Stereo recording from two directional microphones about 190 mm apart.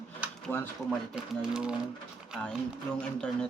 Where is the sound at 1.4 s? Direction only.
5° right (ahead or behind).